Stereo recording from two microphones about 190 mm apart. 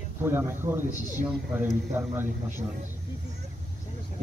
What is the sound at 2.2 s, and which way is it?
Speech, 10° right (ahead or behind).